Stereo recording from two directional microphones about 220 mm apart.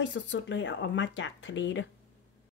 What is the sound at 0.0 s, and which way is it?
Speech, 55° left (ahead or behind).